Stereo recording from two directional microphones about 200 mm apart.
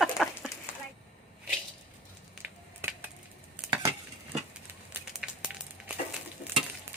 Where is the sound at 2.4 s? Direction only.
10° right (ahead or behind).